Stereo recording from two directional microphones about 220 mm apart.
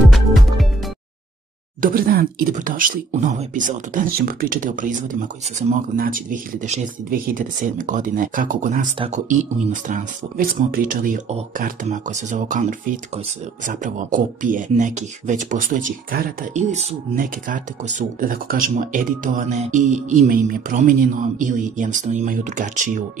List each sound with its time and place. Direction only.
1.8 s speech: 40° right (ahead or behind)